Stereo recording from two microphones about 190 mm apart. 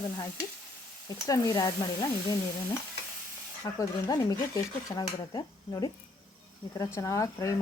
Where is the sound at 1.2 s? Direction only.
20° left (ahead or behind).